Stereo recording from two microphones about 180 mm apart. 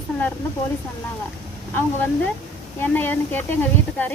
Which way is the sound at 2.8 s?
10° left (ahead or behind).